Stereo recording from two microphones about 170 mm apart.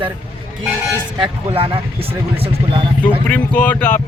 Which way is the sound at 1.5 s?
35° right (ahead or behind).